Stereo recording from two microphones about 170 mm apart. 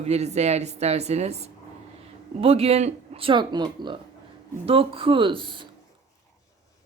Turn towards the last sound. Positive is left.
turn(degrees=-30)  # may be behind; listen again after turning